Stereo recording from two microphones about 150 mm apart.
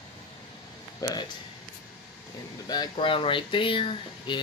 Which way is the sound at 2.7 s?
30° left (ahead or behind).